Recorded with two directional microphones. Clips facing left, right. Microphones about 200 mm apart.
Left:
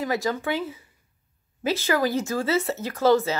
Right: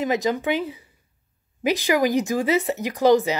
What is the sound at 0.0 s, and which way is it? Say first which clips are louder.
A woman's voice: right 3 dB; 20° right (ahead or behind).